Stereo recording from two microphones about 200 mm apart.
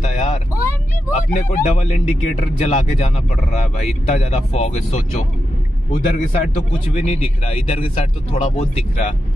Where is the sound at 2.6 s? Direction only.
30° left (ahead or behind).